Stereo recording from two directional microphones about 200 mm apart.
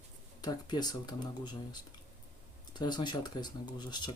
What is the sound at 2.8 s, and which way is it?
Speech, 20° left (ahead or behind).